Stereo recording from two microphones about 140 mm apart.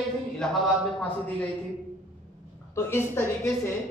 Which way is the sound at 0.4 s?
5° left (ahead or behind).